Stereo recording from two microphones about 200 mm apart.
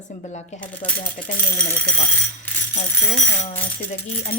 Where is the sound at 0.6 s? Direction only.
5° left (ahead or behind).